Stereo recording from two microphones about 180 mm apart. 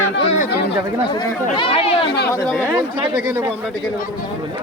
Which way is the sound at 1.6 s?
30° left (ahead or behind).